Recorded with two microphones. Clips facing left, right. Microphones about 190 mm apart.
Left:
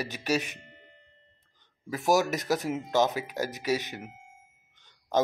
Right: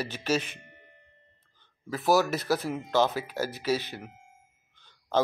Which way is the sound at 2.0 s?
15° left (ahead or behind).